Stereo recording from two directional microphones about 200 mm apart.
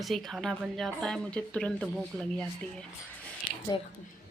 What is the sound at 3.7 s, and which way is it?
Speech, 20° left (ahead or behind).